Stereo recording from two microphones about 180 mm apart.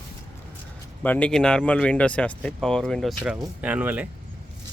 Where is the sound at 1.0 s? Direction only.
10° left (ahead or behind); by 4.0 s 10° right (ahead or behind).